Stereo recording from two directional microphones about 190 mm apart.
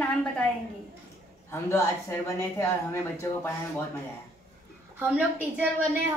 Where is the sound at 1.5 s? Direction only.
15° left (ahead or behind).